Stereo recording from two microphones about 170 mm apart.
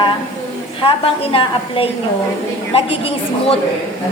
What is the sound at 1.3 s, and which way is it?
A woman's voice, 35° left (ahead or behind).